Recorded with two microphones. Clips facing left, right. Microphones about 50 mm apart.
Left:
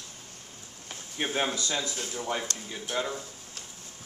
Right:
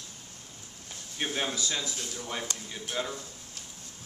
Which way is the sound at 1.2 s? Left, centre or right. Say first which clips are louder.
Left 2 dB; left.